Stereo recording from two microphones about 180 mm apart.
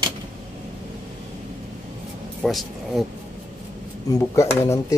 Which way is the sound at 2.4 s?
Centre (ahead or behind).